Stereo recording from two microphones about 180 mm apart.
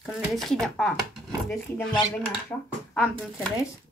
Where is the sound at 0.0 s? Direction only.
Centre (ahead or behind).